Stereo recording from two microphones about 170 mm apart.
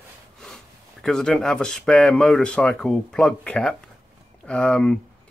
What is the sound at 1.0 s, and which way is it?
Speech, 5° left (ahead or behind).